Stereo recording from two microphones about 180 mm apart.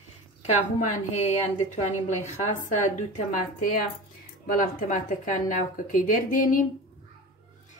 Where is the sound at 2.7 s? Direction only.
45° left (ahead or behind).